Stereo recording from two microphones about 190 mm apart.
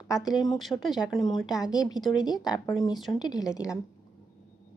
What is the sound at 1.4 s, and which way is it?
Speech, 20° left (ahead or behind).